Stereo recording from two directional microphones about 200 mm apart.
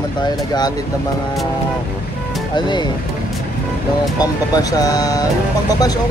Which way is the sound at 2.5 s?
20° left (ahead or behind).